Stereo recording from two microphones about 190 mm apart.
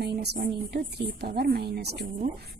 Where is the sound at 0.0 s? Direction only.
60° right (ahead or behind).